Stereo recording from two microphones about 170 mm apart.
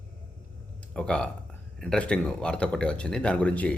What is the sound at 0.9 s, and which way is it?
Speech, 5° left (ahead or behind).